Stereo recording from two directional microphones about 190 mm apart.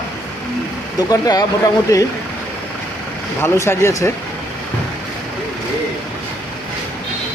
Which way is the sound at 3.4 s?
15° left (ahead or behind).